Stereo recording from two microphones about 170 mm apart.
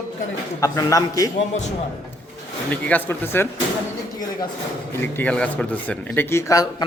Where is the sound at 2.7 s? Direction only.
10° left (ahead or behind).